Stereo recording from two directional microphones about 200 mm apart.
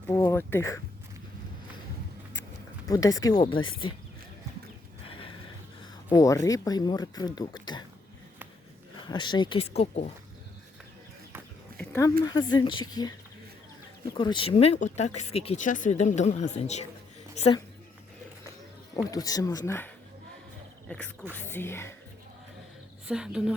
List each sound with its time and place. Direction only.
0.1 s speech: 10° left (ahead or behind)
2.8 s speech: 15° left (ahead or behind)
5.0 s a sound: 25° left (ahead or behind)
6.1 s speech: 15° left (ahead or behind)
9.0 s speech: 20° left (ahead or behind)
11.8 s a sound: 15° left (ahead or behind)
12.2 s a woman's voice: 20° left (ahead or behind)
18.9 s speech: 20° left (ahead or behind)
23.0 s a woman's voice: 5° right (ahead or behind)